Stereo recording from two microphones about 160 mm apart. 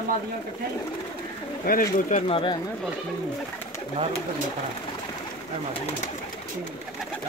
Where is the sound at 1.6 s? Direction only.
65° left (ahead or behind).